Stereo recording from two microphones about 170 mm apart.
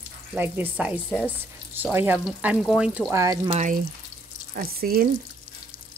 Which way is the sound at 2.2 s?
Centre (ahead or behind).